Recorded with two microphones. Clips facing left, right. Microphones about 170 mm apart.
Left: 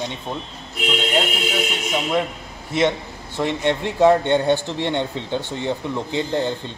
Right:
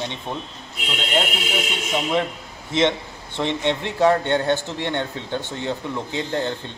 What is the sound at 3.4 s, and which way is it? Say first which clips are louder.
A man's voice: left 2 dB; 10° left (ahead or behind).